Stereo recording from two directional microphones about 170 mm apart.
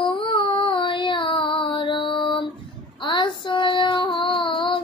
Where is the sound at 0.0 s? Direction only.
30° left (ahead or behind).